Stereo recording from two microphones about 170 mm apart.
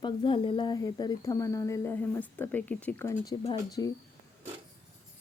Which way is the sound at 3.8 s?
90° left.